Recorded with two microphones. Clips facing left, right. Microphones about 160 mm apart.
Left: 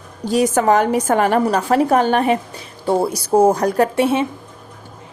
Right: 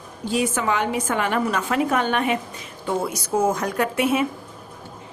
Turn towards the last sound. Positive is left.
turn(degrees=30)  # may be behind; listen again after turning